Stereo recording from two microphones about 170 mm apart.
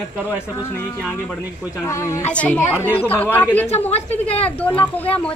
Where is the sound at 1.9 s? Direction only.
15° left (ahead or behind).